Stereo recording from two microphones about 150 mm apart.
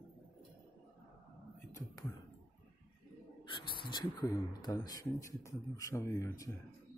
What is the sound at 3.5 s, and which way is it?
Speech, 35° left (ahead or behind).